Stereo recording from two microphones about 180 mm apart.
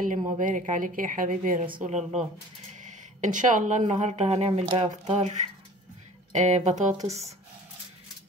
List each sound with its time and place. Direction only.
0.0 s speech: 45° right (ahead or behind)
6.3 s speech: 40° right (ahead or behind)